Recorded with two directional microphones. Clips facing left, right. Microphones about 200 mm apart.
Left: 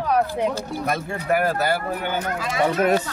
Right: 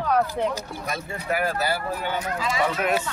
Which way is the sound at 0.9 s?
55° left (ahead or behind).